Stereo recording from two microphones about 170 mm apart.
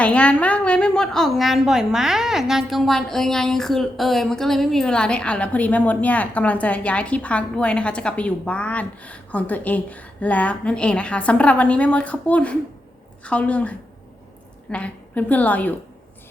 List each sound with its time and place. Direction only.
0.0 s a woman's voice: 5° left (ahead or behind)